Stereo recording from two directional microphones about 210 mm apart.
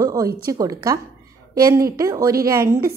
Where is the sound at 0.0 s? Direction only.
15° right (ahead or behind).